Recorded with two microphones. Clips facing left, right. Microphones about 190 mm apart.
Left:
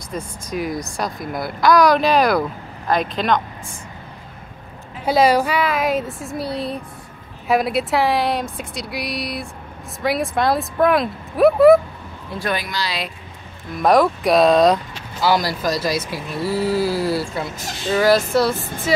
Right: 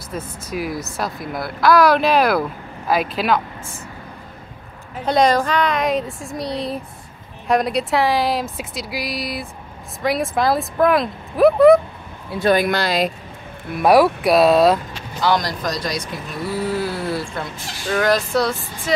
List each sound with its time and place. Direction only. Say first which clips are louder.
0.1 s a woman's voice: left 1 dB; 5° right (ahead or behind)
5.0 s a woman's voice: left 1 dB; 5° left (ahead or behind)
12.5 s speech: right 8 dB; 55° right (ahead or behind)
13.7 s a woman's voice: right 2 dB; 5° right (ahead or behind)